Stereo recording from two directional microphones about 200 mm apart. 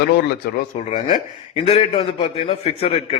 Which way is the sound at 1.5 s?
30° left (ahead or behind).